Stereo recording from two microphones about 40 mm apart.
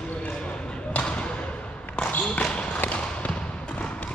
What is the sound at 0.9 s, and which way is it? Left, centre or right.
Basketball bounce, left.